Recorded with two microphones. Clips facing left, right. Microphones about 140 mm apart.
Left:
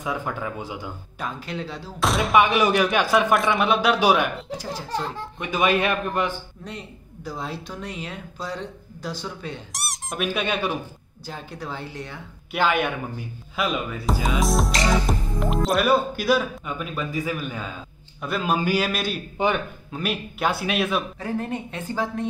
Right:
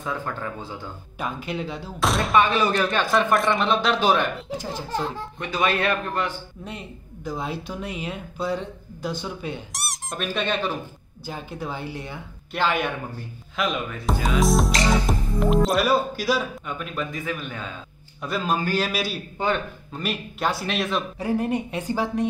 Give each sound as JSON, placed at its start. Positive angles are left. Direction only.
{"t": 0.0, "sound": "speech", "side_deg": 15}
{"t": 1.1, "sound": "speech", "side_deg": -5}
{"t": 2.4, "sound": "speech", "side_deg": 15}
{"t": 5.4, "sound": "speech", "side_deg": 20}
{"t": 7.2, "sound": "speech", "side_deg": -5}
{"t": 11.2, "sound": "speech", "side_deg": -5}
{"t": 12.8, "sound": "speech", "side_deg": 5}
{"t": 19.3, "sound": "speech", "side_deg": 15}
{"t": 19.9, "sound": "speech", "side_deg": 0}
{"t": 21.2, "sound": "speech", "side_deg": -15}